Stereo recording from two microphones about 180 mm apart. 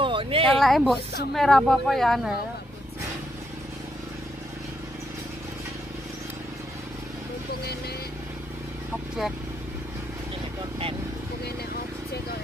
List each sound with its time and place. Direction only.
0.0 s speech: 30° right (ahead or behind)
0.6 s speech: centre (ahead or behind)